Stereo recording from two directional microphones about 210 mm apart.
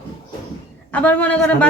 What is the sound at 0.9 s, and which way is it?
Speech, 5° left (ahead or behind).